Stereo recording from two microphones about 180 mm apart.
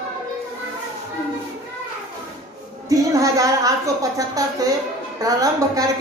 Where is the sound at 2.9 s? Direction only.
20° right (ahead or behind).